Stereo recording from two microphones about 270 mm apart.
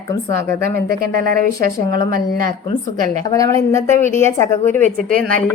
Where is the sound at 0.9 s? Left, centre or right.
Right.